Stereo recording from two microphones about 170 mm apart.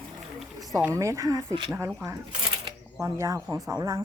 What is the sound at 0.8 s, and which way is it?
Speech, 15° right (ahead or behind).